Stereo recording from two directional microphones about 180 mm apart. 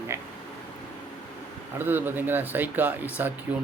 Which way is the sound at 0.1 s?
15° right (ahead or behind).